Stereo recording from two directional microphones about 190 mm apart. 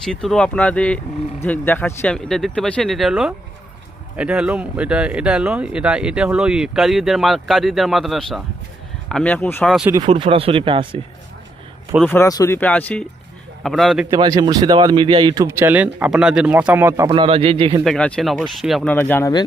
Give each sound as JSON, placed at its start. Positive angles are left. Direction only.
{"t": 0.0, "sound": "speech", "side_deg": 0}
{"t": 9.6, "sound": "speech", "side_deg": -5}
{"t": 10.1, "sound": "speech", "side_deg": -30}
{"t": 12.0, "sound": "speech", "side_deg": 10}
{"t": 14.1, "sound": "speech", "side_deg": -25}
{"t": 15.4, "sound": "speech", "side_deg": -10}
{"t": 17.1, "sound": "speech", "side_deg": -30}
{"t": 17.8, "sound": "speech", "side_deg": 5}